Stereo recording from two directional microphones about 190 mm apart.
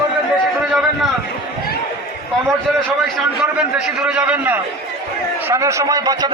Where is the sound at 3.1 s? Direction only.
5° right (ahead or behind).